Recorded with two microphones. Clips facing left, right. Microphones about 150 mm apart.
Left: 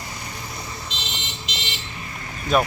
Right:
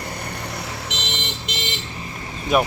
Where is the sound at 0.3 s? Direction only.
70° right (ahead or behind).